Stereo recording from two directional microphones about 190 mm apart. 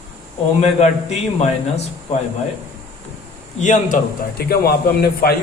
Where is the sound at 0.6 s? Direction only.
35° left (ahead or behind).